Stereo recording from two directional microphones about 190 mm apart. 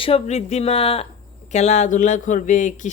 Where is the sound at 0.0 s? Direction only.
35° left (ahead or behind).